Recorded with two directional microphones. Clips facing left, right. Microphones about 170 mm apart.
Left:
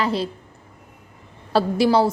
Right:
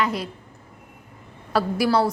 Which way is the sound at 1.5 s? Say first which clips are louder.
Left 3 dB; 25° left (ahead or behind).